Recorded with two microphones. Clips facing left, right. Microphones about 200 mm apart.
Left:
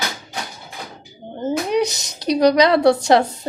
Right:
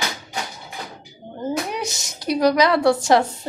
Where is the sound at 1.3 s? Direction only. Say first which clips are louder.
Left 3 dB; 25° left (ahead or behind).